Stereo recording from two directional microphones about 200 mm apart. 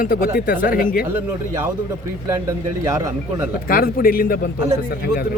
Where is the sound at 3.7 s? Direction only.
45° left (ahead or behind).